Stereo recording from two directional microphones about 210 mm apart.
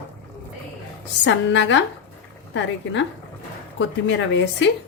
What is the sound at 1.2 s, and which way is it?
A woman's voice, 60° left (ahead or behind).